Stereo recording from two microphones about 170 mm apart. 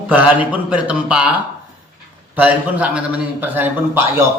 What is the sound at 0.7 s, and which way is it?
Speech, 5° right (ahead or behind).